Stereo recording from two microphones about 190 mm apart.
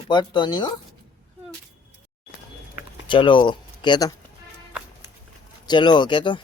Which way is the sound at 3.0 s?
25° left (ahead or behind).